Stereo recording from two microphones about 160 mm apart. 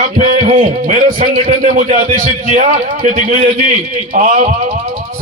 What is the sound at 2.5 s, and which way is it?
A man's voice, 50° right (ahead or behind).